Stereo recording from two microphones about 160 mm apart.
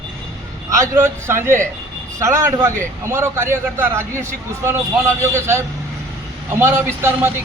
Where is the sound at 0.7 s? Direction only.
20° right (ahead or behind).